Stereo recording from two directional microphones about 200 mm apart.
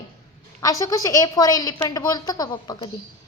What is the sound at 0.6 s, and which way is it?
A woman's voice, 15° left (ahead or behind).